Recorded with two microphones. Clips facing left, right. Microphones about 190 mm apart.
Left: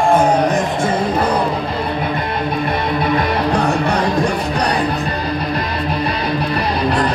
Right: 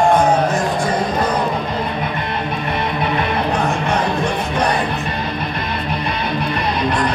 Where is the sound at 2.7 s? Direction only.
35° left (ahead or behind).